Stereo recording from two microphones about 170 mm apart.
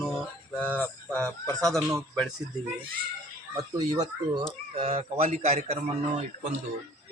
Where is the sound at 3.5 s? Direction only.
20° right (ahead or behind).